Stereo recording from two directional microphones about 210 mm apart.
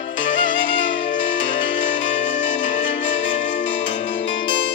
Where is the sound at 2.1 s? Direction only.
40° left (ahead or behind).